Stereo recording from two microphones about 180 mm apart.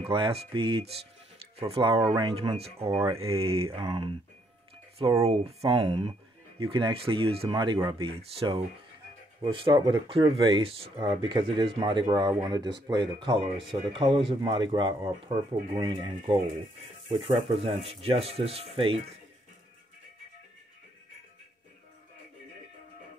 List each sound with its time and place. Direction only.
0.0 s speech: 30° right (ahead or behind)
5.2 s speech: 35° right (ahead or behind)